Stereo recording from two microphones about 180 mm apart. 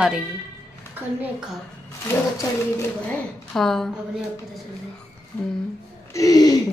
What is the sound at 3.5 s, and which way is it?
A woman's voice, centre (ahead or behind).